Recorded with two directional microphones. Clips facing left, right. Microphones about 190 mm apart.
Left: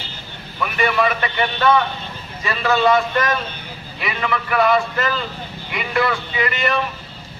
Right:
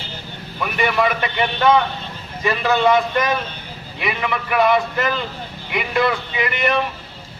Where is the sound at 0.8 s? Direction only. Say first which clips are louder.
Even; 15° right (ahead or behind).